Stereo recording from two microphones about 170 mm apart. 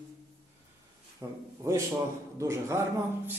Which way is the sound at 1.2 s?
20° right (ahead or behind).